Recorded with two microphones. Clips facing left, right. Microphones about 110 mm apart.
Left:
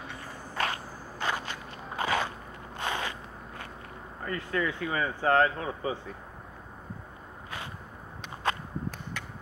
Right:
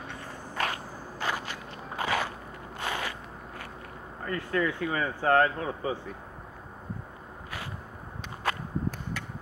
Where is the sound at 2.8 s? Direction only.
25° left (ahead or behind).